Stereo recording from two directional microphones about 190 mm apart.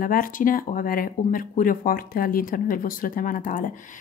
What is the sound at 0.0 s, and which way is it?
Speech, 45° left (ahead or behind).